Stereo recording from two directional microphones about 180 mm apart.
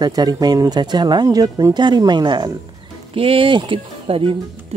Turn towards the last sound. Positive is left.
turn(degrees=-30)  # may be behind; listen again after turning